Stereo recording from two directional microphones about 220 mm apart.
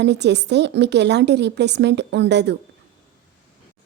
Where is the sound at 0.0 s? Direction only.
50° right (ahead or behind).